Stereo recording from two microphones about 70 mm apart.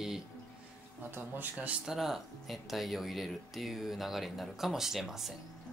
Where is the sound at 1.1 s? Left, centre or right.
Right.